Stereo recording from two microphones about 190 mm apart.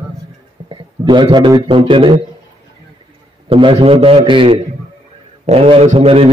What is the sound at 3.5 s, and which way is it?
A man's voice, 25° right (ahead or behind).